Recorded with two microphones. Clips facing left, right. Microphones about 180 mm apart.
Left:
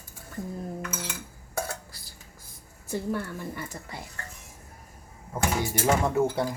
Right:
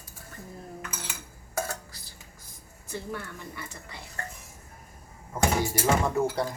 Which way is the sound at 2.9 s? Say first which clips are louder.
Left 6 dB; 45° left (ahead or behind).